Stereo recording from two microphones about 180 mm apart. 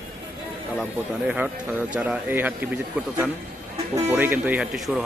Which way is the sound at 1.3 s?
10° right (ahead or behind).